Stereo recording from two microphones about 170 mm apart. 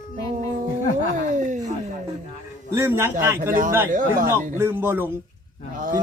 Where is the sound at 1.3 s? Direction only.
50° right (ahead or behind).